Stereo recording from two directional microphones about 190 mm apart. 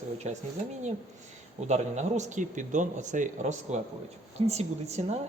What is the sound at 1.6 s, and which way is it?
Speech, 35° right (ahead or behind).